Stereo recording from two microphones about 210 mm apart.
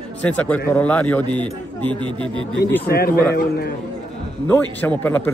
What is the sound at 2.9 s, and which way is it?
Speech, 45° left (ahead or behind).